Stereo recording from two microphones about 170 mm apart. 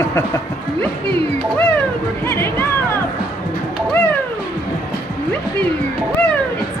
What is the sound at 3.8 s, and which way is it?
Music, 10° left (ahead or behind).